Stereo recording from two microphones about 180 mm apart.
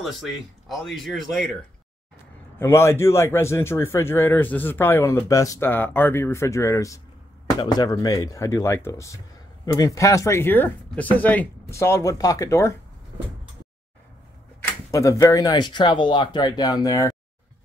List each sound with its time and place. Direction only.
0.7 s speech: centre (ahead or behind)
2.6 s a man's voice: 15° left (ahead or behind)
14.9 s speech: 15° left (ahead or behind)